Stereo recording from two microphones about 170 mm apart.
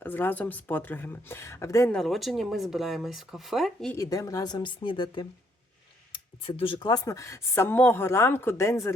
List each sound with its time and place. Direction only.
0.0 s speech: 10° left (ahead or behind)
1.9 s speech: centre (ahead or behind)
3.9 s speech: 20° left (ahead or behind)